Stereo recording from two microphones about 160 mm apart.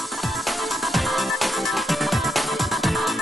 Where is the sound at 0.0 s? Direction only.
Centre (ahead or behind).